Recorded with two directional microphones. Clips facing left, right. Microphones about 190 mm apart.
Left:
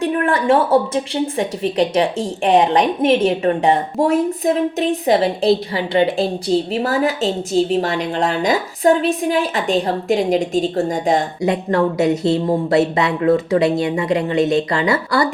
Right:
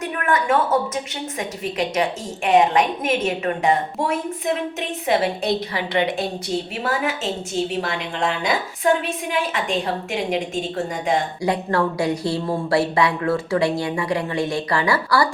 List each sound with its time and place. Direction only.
0.2 s a woman's voice: 30° left (ahead or behind)
11.3 s a woman's voice: 20° left (ahead or behind)